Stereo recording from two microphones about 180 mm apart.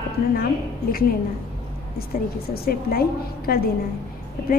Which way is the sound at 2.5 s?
60° left (ahead or behind).